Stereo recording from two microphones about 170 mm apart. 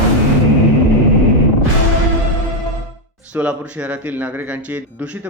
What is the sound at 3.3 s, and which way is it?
Speech, 5° right (ahead or behind).